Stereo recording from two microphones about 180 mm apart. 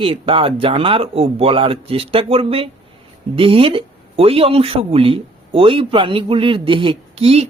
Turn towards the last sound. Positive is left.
turn(degrees=-35)  # may be behind; listen again after turning